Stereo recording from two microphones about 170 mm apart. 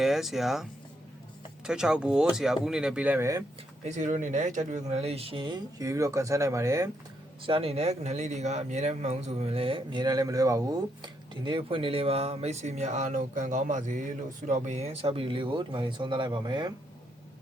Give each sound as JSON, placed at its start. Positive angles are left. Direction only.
{"t": 0.0, "sound": "speech", "side_deg": 0}
{"t": 3.8, "sound": "speech", "side_deg": -45}
{"t": 7.4, "sound": "speech", "side_deg": -35}